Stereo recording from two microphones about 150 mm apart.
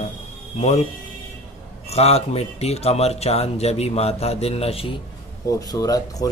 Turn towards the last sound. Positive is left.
turn(degrees=25)  # may be behind; listen again after turning